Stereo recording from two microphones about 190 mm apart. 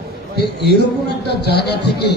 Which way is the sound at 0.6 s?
60° left (ahead or behind).